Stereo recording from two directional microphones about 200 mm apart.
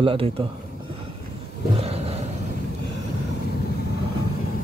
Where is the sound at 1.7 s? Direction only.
30° right (ahead or behind).